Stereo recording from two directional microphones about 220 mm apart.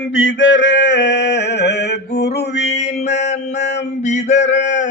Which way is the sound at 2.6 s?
30° left (ahead or behind).